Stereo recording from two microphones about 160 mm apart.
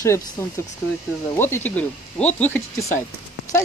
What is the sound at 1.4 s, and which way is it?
Speech, 10° left (ahead or behind).